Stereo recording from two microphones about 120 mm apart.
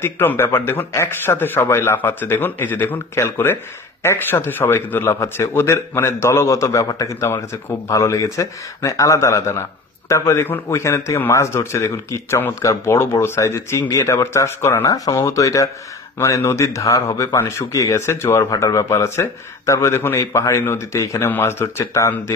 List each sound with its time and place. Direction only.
0.0 s a man's voice: 20° left (ahead or behind)